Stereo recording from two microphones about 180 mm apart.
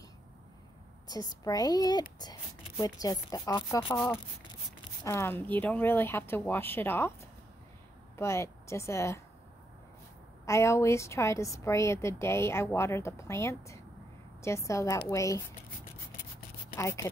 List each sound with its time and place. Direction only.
1.0 s a woman's voice: 20° left (ahead or behind)
10.4 s a woman's voice: 15° left (ahead or behind)
16.7 s a woman's voice: 15° left (ahead or behind)